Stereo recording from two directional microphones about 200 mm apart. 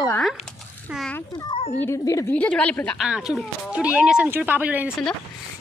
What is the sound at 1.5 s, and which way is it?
Speech, 30° left (ahead or behind).